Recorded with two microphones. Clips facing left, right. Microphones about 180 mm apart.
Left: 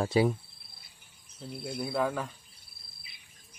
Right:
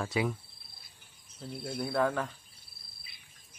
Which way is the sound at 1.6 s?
10° left (ahead or behind).